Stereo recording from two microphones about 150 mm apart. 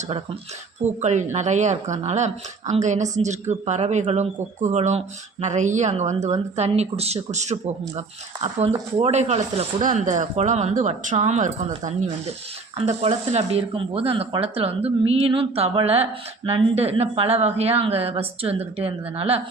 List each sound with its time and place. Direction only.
1.0 s a woman's voice: 50° right (ahead or behind)
9.8 s a woman's voice: 55° right (ahead or behind); by 19.4 s 40° right (ahead or behind)